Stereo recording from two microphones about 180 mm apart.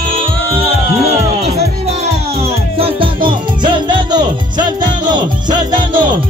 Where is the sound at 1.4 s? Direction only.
35° right (ahead or behind).